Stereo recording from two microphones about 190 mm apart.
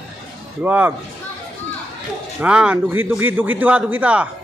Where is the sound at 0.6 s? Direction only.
10° right (ahead or behind).